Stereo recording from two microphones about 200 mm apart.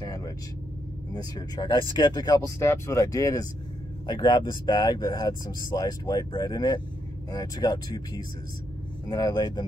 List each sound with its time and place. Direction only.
0.0 s vehicle: 20° left (ahead or behind)
1.1 s speech: 20° left (ahead or behind)